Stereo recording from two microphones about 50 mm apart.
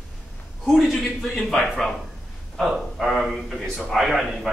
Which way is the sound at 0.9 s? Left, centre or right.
Centre.